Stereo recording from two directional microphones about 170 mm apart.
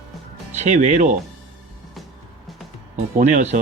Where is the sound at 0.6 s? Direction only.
45° right (ahead or behind).